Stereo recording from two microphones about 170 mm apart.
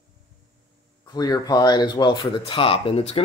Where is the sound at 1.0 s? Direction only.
20° left (ahead or behind).